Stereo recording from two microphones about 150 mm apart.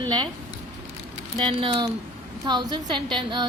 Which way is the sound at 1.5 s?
35° right (ahead or behind).